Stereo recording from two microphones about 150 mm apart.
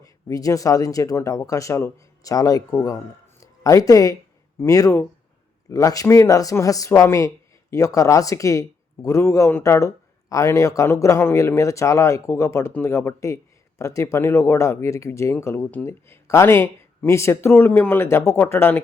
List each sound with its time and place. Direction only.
0.0 s speech: 25° left (ahead or behind)